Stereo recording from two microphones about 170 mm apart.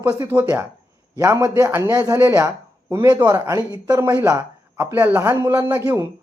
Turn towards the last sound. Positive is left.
turn(degrees=-15)  # may be behind; listen again after turning